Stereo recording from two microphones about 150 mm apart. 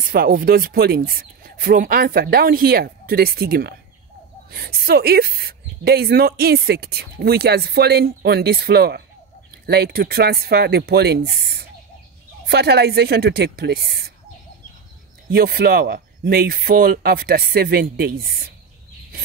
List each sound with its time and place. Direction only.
0.1 s speech: 75° right (ahead or behind)
15.3 s speech: 90° right